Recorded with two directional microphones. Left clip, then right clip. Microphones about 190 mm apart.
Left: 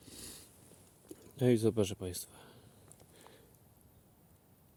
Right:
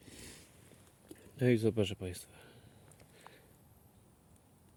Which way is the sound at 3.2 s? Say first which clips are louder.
Right 2 dB; 15° left (ahead or behind).